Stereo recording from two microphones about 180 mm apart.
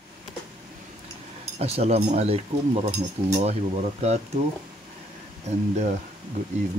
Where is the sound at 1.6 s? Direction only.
35° right (ahead or behind).